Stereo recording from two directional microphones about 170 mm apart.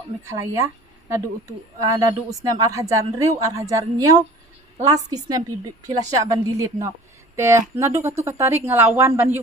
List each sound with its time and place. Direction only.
0.2 s speech: 15° right (ahead or behind)
1.8 s a woman's voice: 20° right (ahead or behind)